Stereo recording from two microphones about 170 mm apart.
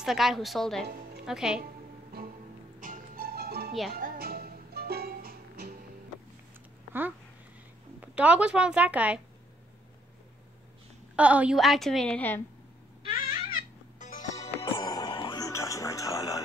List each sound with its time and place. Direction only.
0.0 s a woman's voice: centre (ahead or behind)
2.8 s music: 55° right (ahead or behind)
6.9 s a sound: 10° right (ahead or behind)
8.0 s a woman's voice: 5° right (ahead or behind)
11.1 s a woman's voice: 10° right (ahead or behind); by 12.4 s 10° left (ahead or behind)
13.1 s music: 55° left (ahead or behind); by 16.3 s 20° left (ahead or behind)